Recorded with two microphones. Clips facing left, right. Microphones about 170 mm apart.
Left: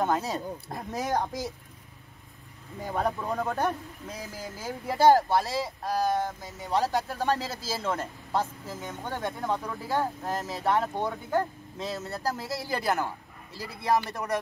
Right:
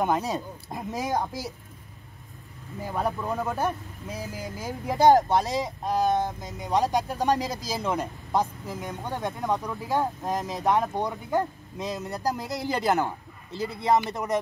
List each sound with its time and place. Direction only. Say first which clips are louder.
0.0 s speech: right 2 dB; 15° right (ahead or behind)
2.8 s speech: right 1 dB; 5° right (ahead or behind); by 14.4 s 20° right (ahead or behind)